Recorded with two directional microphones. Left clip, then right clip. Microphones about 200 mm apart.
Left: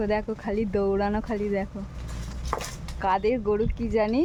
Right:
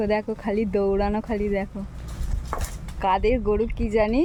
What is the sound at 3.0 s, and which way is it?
Speech, 15° right (ahead or behind).